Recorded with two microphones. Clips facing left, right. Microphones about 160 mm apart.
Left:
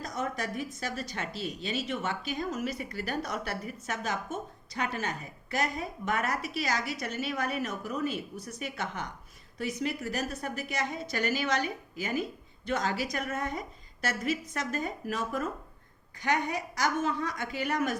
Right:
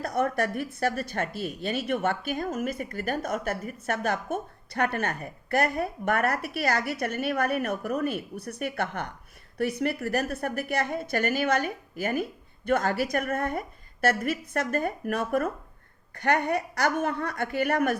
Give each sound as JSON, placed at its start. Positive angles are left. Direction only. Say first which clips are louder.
{"t": 0.0, "sound": "a woman's voice", "louder": "right 8 dB", "side_deg": -60}